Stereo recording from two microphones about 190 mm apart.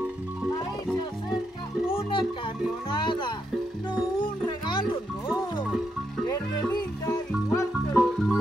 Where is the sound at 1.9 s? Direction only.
25° left (ahead or behind).